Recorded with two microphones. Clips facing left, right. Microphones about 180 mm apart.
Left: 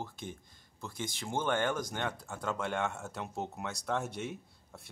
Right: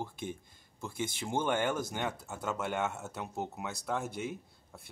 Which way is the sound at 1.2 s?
10° right (ahead or behind).